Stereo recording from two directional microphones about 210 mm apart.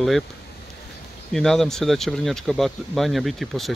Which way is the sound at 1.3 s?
Centre (ahead or behind).